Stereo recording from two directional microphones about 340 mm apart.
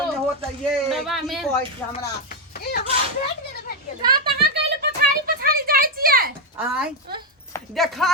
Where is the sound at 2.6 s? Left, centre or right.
Left.